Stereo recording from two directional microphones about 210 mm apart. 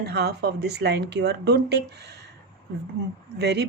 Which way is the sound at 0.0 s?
50° right (ahead or behind).